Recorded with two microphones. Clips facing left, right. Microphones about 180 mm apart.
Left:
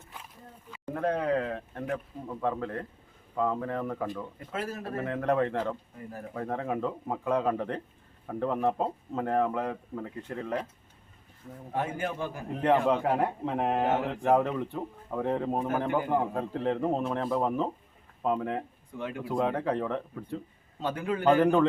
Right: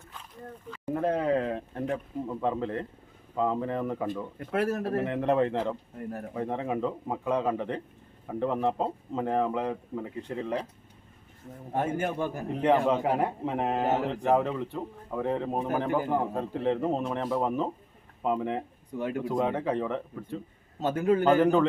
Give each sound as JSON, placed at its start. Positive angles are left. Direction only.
{"t": 1.0, "sound": "speech", "side_deg": -5}
{"t": 1.5, "sound": "speech", "side_deg": -25}
{"t": 4.4, "sound": "speech", "side_deg": -65}
{"t": 4.9, "sound": "speech", "side_deg": -20}
{"t": 11.7, "sound": "a man's voice", "side_deg": -45}
{"t": 12.5, "sound": "speech", "side_deg": -10}
{"t": 18.9, "sound": "speech", "side_deg": -40}
{"t": 19.3, "sound": "speech", "side_deg": -20}
{"t": 19.5, "sound": "speech", "side_deg": -10}
{"t": 20.8, "sound": "a man's voice", "side_deg": -45}
{"t": 21.4, "sound": "speech", "side_deg": -5}